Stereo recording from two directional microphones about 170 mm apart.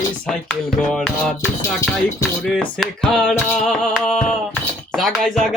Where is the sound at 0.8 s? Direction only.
5° left (ahead or behind).